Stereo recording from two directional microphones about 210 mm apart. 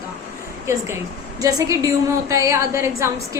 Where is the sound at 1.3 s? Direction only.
15° right (ahead or behind).